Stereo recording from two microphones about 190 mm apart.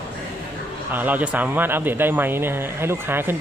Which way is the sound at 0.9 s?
10° right (ahead or behind).